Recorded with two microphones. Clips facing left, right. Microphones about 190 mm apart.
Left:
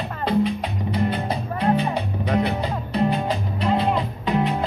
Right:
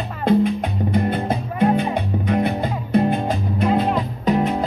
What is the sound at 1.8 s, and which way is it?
Music, 50° right (ahead or behind).